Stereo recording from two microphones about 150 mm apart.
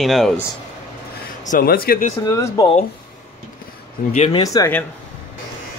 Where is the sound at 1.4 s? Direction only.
70° left (ahead or behind).